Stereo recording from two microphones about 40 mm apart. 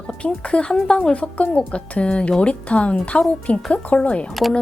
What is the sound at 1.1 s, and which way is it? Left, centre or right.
A woman's voice, left.